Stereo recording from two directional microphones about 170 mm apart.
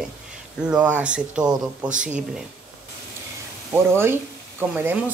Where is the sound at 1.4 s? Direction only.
25° right (ahead or behind).